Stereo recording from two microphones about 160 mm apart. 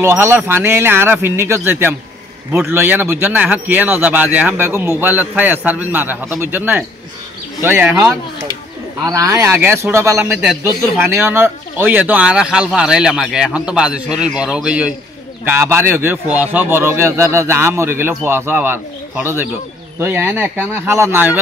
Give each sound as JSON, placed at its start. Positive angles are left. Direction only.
{"t": 0.0, "sound": "speech", "side_deg": -15}
{"t": 10.1, "sound": "speech", "side_deg": -5}
{"t": 10.6, "sound": "speech", "side_deg": -15}